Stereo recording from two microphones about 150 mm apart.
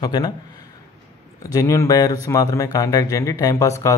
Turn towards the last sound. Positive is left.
turn(degrees=20)  # may be behind; listen again after turning